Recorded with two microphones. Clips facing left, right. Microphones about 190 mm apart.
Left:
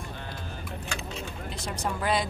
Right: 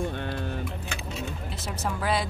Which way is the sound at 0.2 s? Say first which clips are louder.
Right 8 dB; 65° right (ahead or behind).